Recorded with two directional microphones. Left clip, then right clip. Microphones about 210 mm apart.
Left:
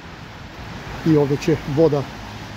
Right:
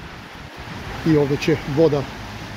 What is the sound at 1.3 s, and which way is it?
Speech, 20° left (ahead or behind).